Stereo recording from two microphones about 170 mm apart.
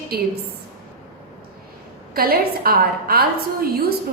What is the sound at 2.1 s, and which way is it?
A woman's voice, 65° right (ahead or behind).